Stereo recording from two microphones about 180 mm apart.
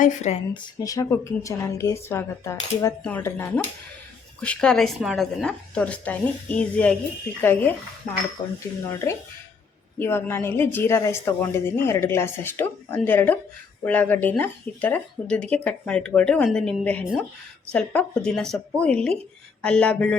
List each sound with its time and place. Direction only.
0.0 s speech: 40° left (ahead or behind)
0.8 s a woman's voice: 20° left (ahead or behind)
10.0 s a woman's voice: 10° left (ahead or behind)